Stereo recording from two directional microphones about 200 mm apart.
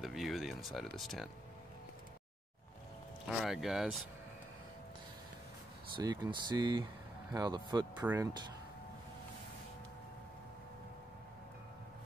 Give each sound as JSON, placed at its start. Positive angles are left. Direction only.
{"t": 0.0, "sound": "speech", "side_deg": 0}
{"t": 3.3, "sound": "speech", "side_deg": 0}
{"t": 5.9, "sound": "speech", "side_deg": -20}